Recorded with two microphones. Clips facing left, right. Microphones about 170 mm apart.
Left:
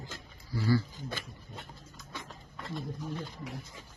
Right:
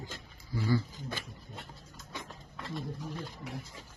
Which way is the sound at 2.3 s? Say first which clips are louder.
Left 1 dB; centre (ahead or behind).